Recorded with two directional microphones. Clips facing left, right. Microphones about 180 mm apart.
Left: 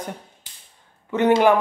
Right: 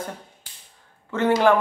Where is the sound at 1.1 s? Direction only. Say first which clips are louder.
Left 2 dB; 20° left (ahead or behind).